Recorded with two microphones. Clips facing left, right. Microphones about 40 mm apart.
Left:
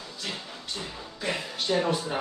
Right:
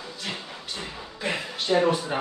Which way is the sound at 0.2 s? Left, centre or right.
Centre.